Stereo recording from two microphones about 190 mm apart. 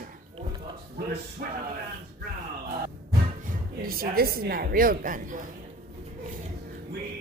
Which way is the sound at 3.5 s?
50° right (ahead or behind).